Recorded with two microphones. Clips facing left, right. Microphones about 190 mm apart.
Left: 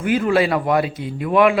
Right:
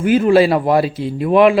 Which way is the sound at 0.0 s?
25° right (ahead or behind).